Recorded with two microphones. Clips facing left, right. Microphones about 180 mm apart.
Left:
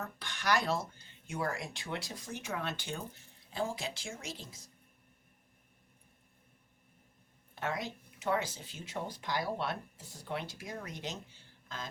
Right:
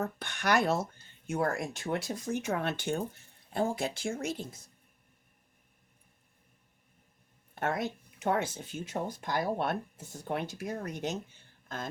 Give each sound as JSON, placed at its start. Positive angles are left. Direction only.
{"t": 0.0, "sound": "speech", "side_deg": -55}
{"t": 7.6, "sound": "speech", "side_deg": -55}